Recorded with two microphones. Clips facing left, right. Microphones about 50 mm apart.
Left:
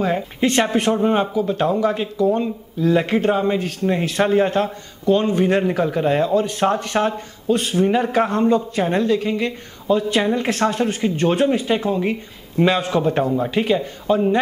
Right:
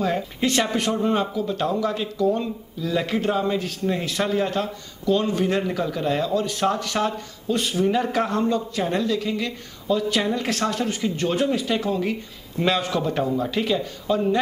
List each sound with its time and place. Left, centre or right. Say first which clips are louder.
0.0 s a man's voice: left 4 dB; left